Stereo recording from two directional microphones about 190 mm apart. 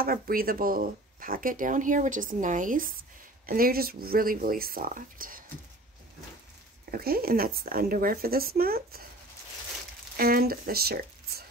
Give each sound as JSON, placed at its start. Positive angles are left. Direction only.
{"t": 0.0, "sound": "speech", "side_deg": -50}
{"t": 6.9, "sound": "speech", "side_deg": -50}
{"t": 10.1, "sound": "speech", "side_deg": -50}